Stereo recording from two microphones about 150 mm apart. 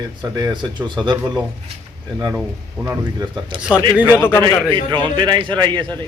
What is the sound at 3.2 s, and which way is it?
Speech, 30° right (ahead or behind).